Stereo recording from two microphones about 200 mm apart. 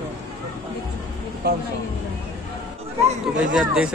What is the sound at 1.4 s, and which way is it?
Speech, 55° right (ahead or behind).